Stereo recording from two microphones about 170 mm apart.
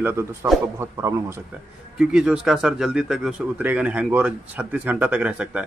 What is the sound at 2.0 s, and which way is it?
A man's voice, 5° right (ahead or behind).